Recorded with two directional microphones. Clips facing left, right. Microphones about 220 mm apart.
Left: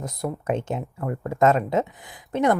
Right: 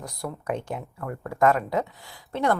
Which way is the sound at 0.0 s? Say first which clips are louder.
Left 5 dB; 20° left (ahead or behind).